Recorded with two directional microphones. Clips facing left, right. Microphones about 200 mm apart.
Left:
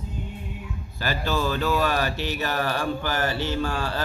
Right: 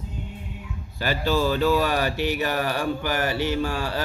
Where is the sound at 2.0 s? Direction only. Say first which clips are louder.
Right 3 dB; 15° right (ahead or behind).